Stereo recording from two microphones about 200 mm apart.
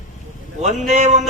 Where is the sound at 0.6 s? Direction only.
35° right (ahead or behind).